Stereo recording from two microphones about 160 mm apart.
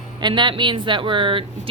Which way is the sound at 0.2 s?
30° right (ahead or behind).